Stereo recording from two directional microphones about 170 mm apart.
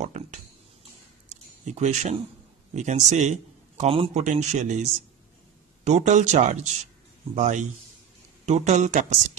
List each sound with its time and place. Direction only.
0.0 s a man's voice: 45° right (ahead or behind)
1.3 s a sound: 45° right (ahead or behind)
2.7 s a man's voice: 45° right (ahead or behind)